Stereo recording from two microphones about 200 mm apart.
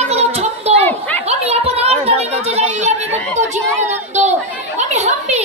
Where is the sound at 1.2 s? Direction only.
30° right (ahead or behind).